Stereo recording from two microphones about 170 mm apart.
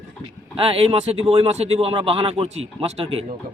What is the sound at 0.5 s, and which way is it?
A man's voice, 35° right (ahead or behind).